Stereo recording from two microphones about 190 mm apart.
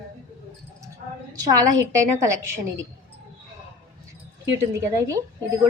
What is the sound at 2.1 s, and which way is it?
Speech, 15° right (ahead or behind).